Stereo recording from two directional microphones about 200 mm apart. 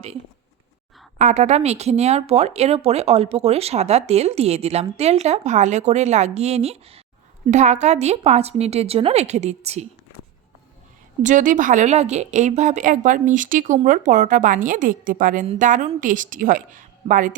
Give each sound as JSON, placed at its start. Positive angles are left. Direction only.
{"t": 1.2, "sound": "speech", "side_deg": -35}
{"t": 11.2, "sound": "speech", "side_deg": -40}